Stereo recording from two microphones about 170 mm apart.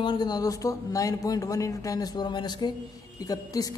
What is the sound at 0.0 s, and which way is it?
A woman's voice, 25° left (ahead or behind).